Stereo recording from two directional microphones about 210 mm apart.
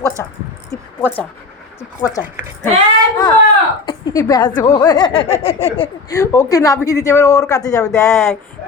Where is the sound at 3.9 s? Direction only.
20° left (ahead or behind).